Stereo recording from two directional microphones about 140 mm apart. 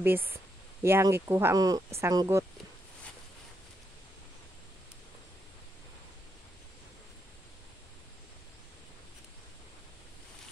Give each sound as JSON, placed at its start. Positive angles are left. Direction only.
{"t": 0.0, "sound": "speech", "side_deg": -15}